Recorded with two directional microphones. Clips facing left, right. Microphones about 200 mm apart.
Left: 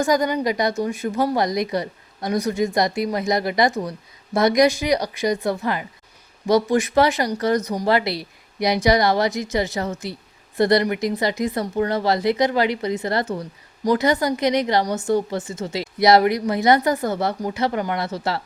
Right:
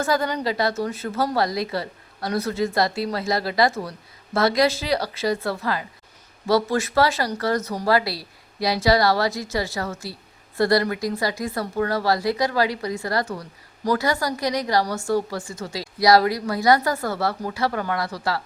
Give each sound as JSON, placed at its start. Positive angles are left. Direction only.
{"t": 0.0, "sound": "a woman's voice", "side_deg": 15}